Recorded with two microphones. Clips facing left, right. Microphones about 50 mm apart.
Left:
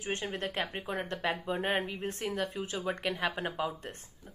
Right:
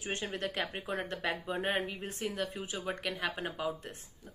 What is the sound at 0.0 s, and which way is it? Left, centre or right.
Speech, left.